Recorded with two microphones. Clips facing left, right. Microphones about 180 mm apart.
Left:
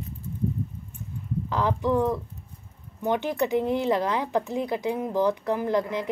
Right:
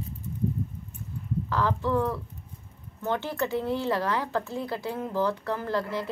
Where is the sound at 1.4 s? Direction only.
20° left (ahead or behind).